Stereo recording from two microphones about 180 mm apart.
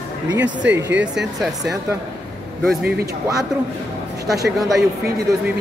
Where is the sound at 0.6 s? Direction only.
10° right (ahead or behind).